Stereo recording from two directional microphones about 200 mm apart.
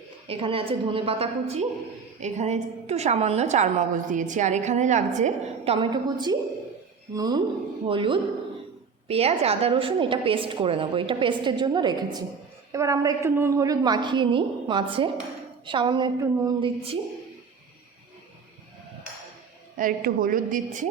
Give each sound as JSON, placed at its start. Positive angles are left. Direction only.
{"t": 0.3, "sound": "a woman's voice", "side_deg": -30}
{"t": 16.6, "sound": "a woman's voice", "side_deg": -25}
{"t": 19.7, "sound": "a woman's voice", "side_deg": -45}